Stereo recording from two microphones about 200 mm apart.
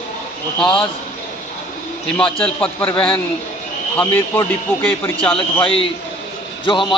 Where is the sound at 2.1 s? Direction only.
5° left (ahead or behind).